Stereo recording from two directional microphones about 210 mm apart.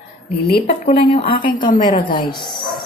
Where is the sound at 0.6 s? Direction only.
30° left (ahead or behind).